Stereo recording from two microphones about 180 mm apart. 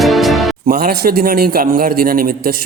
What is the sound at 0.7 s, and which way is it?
A man's voice, 55° right (ahead or behind).